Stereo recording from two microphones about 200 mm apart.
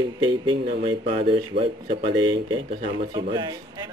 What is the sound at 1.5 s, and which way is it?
Speech, 55° right (ahead or behind).